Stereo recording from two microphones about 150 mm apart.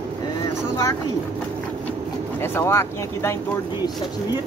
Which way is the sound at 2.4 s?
15° left (ahead or behind).